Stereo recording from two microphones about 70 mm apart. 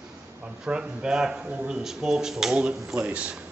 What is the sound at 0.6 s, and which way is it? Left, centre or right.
A man's voice, centre.